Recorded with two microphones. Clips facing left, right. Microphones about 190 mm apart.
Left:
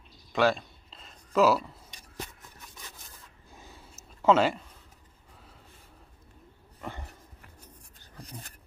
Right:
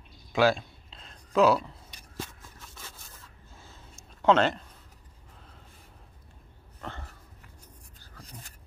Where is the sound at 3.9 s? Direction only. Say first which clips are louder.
Even; 5° left (ahead or behind).